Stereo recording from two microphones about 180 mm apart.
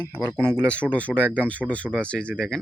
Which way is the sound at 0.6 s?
5° left (ahead or behind).